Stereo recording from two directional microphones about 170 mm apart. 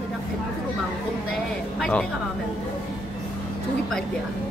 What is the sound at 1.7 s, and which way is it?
Speech, 5° left (ahead or behind).